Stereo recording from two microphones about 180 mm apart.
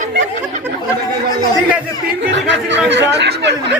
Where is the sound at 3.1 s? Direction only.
75° right (ahead or behind).